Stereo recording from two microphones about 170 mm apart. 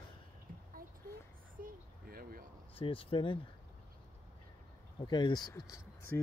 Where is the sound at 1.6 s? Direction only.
60° right (ahead or behind).